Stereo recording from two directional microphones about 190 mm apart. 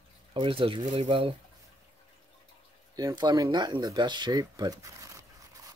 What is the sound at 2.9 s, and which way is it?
Speech, 20° right (ahead or behind).